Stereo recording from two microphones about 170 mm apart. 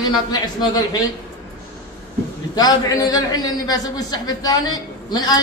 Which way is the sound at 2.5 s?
20° left (ahead or behind).